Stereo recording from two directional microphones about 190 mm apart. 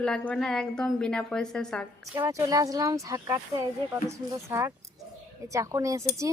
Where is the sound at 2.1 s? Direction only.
15° right (ahead or behind).